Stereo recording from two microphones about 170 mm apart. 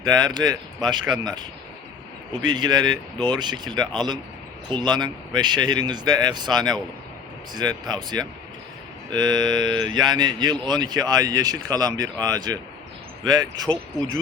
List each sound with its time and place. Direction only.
0.0 s speech: 25° right (ahead or behind)